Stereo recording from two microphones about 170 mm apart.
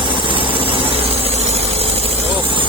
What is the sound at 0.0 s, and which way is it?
Vehicle, 30° right (ahead or behind).